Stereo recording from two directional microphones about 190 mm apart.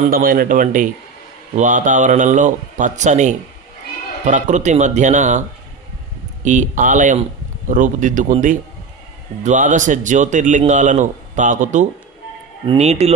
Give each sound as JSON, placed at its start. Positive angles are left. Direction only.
{"t": 0.1, "sound": "speech", "side_deg": -50}
{"t": 6.4, "sound": "speech", "side_deg": -40}